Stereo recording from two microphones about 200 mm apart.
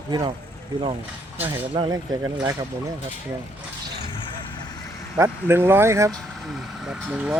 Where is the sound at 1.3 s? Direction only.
10° right (ahead or behind).